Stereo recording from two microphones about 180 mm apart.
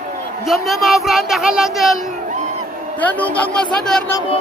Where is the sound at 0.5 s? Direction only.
Centre (ahead or behind).